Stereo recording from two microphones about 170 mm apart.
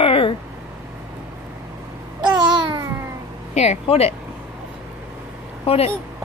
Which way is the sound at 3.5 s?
40° left (ahead or behind).